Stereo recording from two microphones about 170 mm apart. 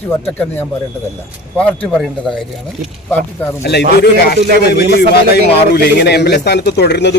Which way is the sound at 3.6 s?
75° left (ahead or behind).